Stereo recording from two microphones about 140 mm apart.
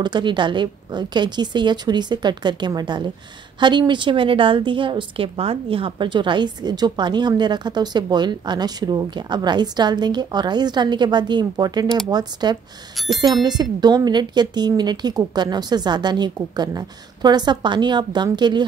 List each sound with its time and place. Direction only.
0.0 s a woman's voice: 35° right (ahead or behind)